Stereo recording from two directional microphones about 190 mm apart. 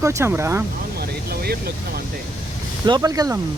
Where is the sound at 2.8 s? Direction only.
20° right (ahead or behind).